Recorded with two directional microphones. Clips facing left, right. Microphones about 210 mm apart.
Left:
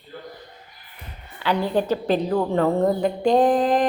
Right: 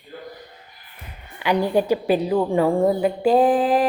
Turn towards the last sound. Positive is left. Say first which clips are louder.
# right 1 dB
turn(degrees=-5)  # may be behind; listen again after turning